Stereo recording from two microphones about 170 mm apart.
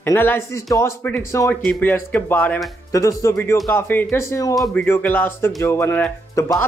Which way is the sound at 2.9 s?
20° left (ahead or behind).